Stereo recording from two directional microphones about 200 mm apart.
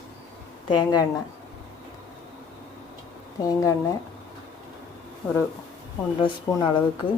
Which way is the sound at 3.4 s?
15° left (ahead or behind).